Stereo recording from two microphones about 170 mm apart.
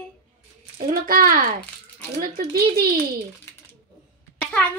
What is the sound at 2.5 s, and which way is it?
Speech, 65° right (ahead or behind).